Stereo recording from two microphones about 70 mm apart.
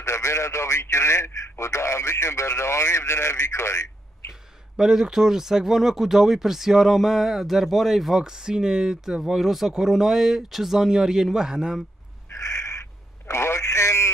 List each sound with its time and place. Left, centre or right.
0.0 s speech: left
4.3 s speech: centre
12.3 s a sound: left
13.3 s radio: left